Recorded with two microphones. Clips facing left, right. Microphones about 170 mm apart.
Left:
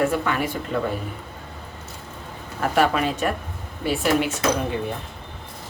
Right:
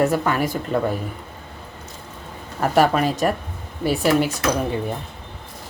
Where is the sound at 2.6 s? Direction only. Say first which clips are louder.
Right 3 dB; 40° right (ahead or behind).